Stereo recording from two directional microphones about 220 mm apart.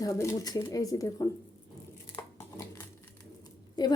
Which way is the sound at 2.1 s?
15° left (ahead or behind).